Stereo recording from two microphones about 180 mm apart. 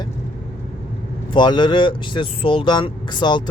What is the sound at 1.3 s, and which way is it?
Speech, 25° left (ahead or behind).